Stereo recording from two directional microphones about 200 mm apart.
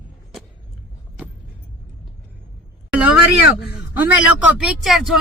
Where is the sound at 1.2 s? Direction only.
5° right (ahead or behind).